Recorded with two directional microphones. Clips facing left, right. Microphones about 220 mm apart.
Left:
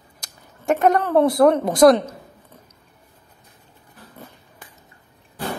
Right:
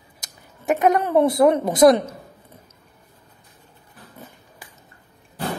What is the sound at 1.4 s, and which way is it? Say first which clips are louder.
Speech: left 1 dB; 5° right (ahead or behind).